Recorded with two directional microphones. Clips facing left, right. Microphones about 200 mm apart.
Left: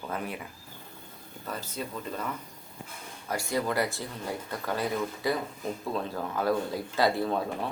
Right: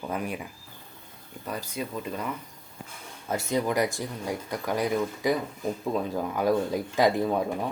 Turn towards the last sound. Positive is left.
turn(degrees=-15)  # may be behind; listen again after turning